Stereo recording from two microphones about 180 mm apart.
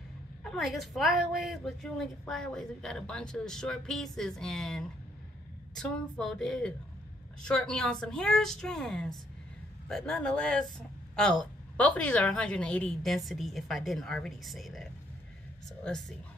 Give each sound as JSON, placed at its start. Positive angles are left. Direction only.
{"t": 0.4, "sound": "a woman's voice", "side_deg": 0}
{"t": 11.7, "sound": "a woman's voice", "side_deg": 5}